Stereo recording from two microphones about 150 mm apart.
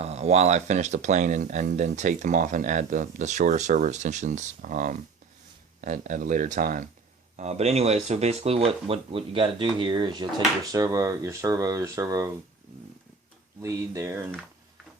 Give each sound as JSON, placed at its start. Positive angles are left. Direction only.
{"t": 0.0, "sound": "speech", "side_deg": -45}
{"t": 7.3, "sound": "speech", "side_deg": -45}
{"t": 13.6, "sound": "speech", "side_deg": -20}